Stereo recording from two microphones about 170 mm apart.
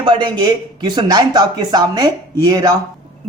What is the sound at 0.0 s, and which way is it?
Speech, 25° right (ahead or behind).